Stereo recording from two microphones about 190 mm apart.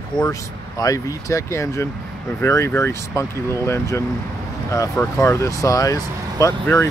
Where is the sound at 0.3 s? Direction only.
20° left (ahead or behind).